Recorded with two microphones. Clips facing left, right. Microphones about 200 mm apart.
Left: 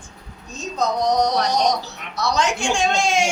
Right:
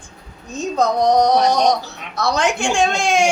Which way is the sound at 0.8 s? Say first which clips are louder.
Right 4 dB; 55° right (ahead or behind).